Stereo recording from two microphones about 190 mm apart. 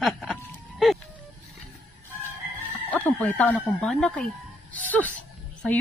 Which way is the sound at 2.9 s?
10° left (ahead or behind).